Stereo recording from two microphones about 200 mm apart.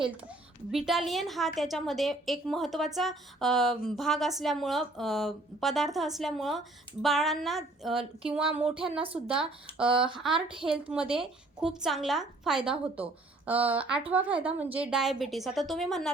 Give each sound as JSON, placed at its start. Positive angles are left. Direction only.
{"t": 0.7, "sound": "a woman's voice", "side_deg": 0}